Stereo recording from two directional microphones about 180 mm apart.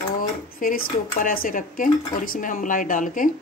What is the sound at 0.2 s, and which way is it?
Speech, 50° left (ahead or behind).